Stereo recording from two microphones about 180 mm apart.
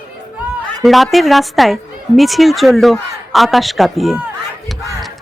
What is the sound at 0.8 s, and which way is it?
A woman's voice, centre (ahead or behind).